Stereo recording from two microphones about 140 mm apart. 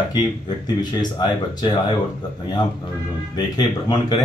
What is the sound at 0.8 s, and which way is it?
Speech, 30° left (ahead or behind).